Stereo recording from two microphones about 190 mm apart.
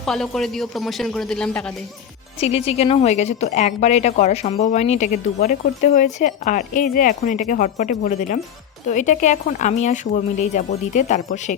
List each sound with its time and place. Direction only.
0.0 s speech: centre (ahead or behind)
2.4 s a woman's voice: 35° left (ahead or behind)